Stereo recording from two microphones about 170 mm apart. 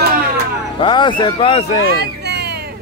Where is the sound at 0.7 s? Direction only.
30° left (ahead or behind).